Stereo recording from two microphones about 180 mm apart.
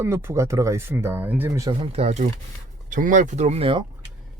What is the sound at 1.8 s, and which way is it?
Speech, 35° right (ahead or behind).